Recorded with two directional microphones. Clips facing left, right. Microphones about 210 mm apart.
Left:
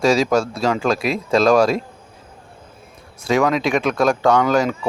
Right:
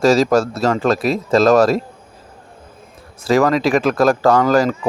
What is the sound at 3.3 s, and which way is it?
Speech, centre (ahead or behind).